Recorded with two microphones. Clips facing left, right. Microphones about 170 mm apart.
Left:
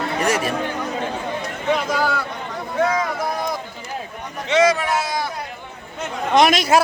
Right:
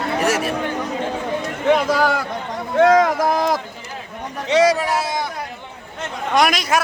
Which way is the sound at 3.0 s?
90° right.